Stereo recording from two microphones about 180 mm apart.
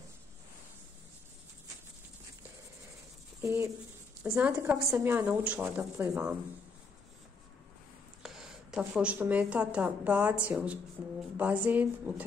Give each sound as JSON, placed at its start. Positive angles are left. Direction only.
{"t": 3.4, "sound": "a woman's voice", "side_deg": -15}
{"t": 4.2, "sound": "a woman's voice", "side_deg": -5}
{"t": 8.2, "sound": "a woman's voice", "side_deg": 0}